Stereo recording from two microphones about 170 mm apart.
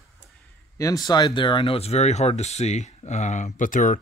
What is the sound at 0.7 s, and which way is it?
Speech, 20° left (ahead or behind).